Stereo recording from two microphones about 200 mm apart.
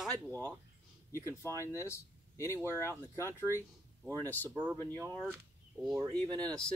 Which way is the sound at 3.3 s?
15° right (ahead or behind).